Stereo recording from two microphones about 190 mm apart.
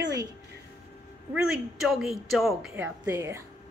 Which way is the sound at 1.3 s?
5° right (ahead or behind).